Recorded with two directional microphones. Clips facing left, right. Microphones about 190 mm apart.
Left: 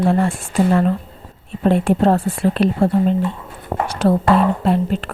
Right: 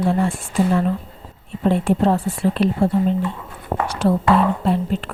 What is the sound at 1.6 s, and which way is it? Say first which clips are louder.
Speech: left 2 dB; 65° left (ahead or behind).